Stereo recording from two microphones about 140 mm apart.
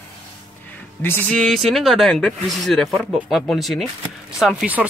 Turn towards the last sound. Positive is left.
turn(degrees=-5)  # may be behind; listen again after turning